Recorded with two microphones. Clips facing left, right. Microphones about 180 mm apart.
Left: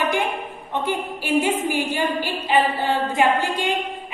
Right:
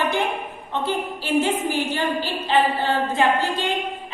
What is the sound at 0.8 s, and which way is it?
A woman's voice, 15° left (ahead or behind).